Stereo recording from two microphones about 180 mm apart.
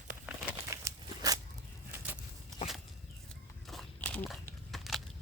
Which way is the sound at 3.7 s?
5° left (ahead or behind).